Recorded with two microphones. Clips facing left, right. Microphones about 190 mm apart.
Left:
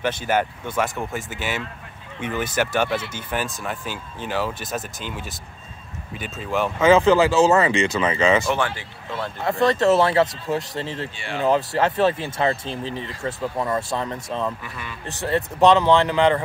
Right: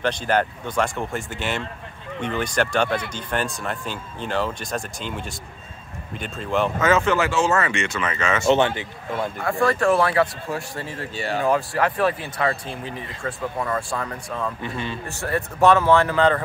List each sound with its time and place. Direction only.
0.0 s speech: 10° left (ahead or behind)
6.8 s speech: 30° left (ahead or behind)
8.5 s a man's voice: 20° right (ahead or behind)
9.4 s speech: 20° left (ahead or behind)
11.1 s speech: 40° right (ahead or behind)
11.4 s speech: 25° left (ahead or behind)
14.6 s a man's voice: 25° right (ahead or behind)
15.0 s a man's voice: 20° left (ahead or behind)